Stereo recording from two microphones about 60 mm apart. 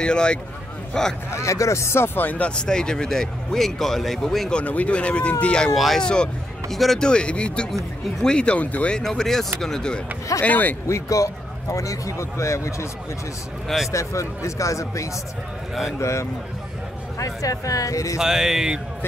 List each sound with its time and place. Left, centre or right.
0.0 s speech: centre
1.3 s speech: left
2.1 s speech: left; by 4.5 s centre
4.5 s speech: left
5.8 s speech: centre
7.0 s speech: centre
8.9 s speech: centre
10.4 s speech: left
10.9 s speech: left
13.9 s speech: left
17.2 s speech: left
18.1 s speech: centre